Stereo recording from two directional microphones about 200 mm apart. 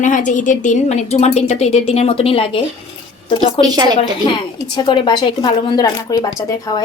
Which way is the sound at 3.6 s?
20° right (ahead or behind).